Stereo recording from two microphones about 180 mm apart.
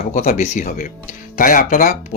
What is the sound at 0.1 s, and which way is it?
Speech, 45° left (ahead or behind).